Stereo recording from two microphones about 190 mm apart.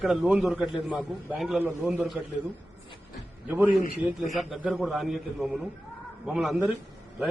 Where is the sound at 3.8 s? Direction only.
40° left (ahead or behind).